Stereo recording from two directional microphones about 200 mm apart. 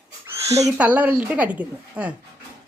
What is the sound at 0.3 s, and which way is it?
Speech, 15° right (ahead or behind).